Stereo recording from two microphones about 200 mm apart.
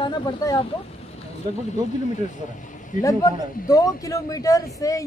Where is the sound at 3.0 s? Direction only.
15° left (ahead or behind).